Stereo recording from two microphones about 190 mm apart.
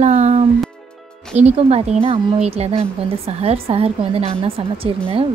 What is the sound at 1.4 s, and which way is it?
A woman's voice, 35° right (ahead or behind).